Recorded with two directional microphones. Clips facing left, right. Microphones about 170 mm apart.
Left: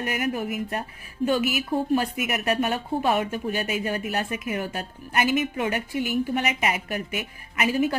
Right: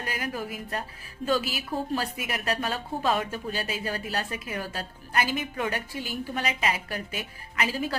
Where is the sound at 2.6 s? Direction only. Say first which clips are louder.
Left 4 dB; 20° left (ahead or behind).